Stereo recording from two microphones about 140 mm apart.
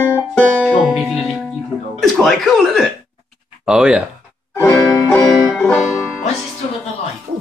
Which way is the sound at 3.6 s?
5° right (ahead or behind).